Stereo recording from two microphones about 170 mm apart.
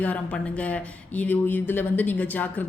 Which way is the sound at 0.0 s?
10° left (ahead or behind).